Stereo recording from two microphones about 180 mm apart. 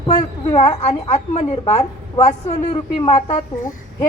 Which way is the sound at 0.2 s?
25° left (ahead or behind).